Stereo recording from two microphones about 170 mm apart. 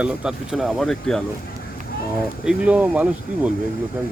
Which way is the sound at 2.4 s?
5° right (ahead or behind).